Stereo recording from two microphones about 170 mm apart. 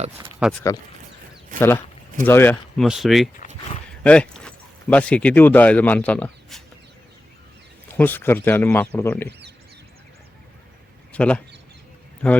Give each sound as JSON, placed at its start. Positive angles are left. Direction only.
{"t": 0.0, "sound": "speech", "side_deg": -35}
{"t": 0.7, "sound": "speech", "side_deg": 20}
{"t": 2.8, "sound": "speech", "side_deg": 0}
{"t": 7.9, "sound": "speech", "side_deg": 10}
{"t": 11.1, "sound": "speech", "side_deg": 5}